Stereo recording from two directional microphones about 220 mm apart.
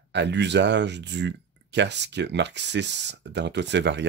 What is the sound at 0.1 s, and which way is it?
Speech, 50° right (ahead or behind).